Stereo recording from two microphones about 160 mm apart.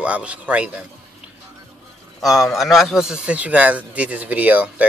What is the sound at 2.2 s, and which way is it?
A man's voice, centre (ahead or behind).